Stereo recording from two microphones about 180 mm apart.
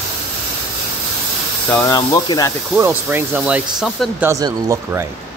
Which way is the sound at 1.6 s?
15° left (ahead or behind).